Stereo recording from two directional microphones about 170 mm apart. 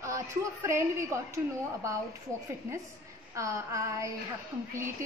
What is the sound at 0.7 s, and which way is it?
Speech, 15° right (ahead or behind).